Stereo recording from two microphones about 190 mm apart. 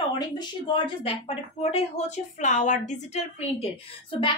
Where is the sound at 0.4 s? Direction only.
25° left (ahead or behind).